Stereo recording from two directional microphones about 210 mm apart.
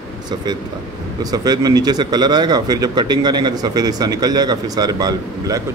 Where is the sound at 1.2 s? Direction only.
20° right (ahead or behind).